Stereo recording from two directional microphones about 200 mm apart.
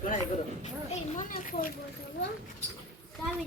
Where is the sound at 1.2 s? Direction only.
45° left (ahead or behind).